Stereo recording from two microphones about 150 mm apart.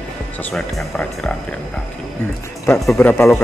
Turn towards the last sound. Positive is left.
turn(degrees=15)  # may be behind; listen again after turning